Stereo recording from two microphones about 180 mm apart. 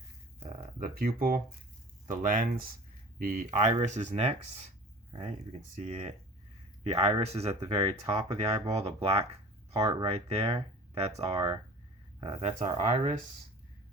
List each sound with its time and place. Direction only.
0.3 s a sound: 35° right (ahead or behind)
0.8 s speech: 55° right (ahead or behind); by 4.4 s 35° right (ahead or behind)
5.7 s speech: 40° right (ahead or behind); by 8.7 s 25° right (ahead or behind)
8.7 s speech: 35° right (ahead or behind)